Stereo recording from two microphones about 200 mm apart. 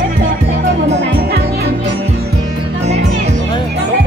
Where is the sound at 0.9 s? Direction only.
55° right (ahead or behind).